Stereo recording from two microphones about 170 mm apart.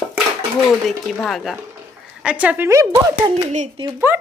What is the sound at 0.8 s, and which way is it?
A woman's voice, centre (ahead or behind).